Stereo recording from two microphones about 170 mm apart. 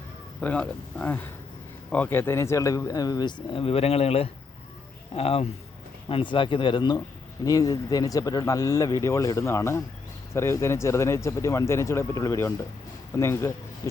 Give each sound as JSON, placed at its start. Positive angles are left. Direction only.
{"t": 0.4, "sound": "speech", "side_deg": 5}